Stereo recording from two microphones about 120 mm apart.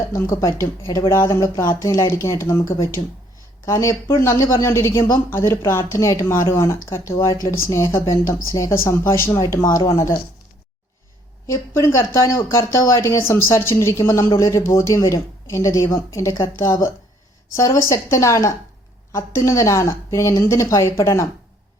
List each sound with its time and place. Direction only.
0.1 s speech: 25° left (ahead or behind)
3.0 s speech: 55° left (ahead or behind)
3.7 s speech: 25° left (ahead or behind)
11.4 s speech: 25° left (ahead or behind)